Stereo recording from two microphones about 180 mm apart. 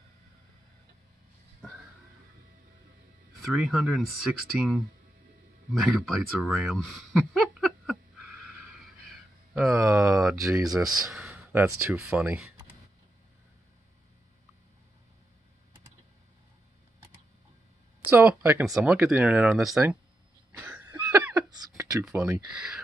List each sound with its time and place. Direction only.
3.5 s speech: centre (ahead or behind)
9.5 s speech: centre (ahead or behind)
10.3 s speech: 20° right (ahead or behind)
11.1 s a sound: 5° right (ahead or behind)
11.6 s speech: 5° right (ahead or behind)
18.1 s speech: 10° right (ahead or behind)
20.5 s cough: 10° right (ahead or behind)
21.5 s a sound: 20° right (ahead or behind)
22.0 s speech: 5° right (ahead or behind)